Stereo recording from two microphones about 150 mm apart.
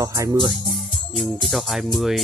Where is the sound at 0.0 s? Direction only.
20° right (ahead or behind).